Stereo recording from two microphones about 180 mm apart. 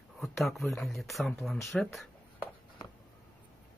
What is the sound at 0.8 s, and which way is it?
Speech, centre (ahead or behind).